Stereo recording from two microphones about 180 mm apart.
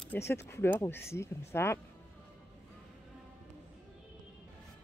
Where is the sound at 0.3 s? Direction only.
15° left (ahead or behind).